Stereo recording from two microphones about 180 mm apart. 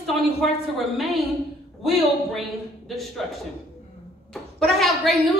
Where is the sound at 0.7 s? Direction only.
Centre (ahead or behind).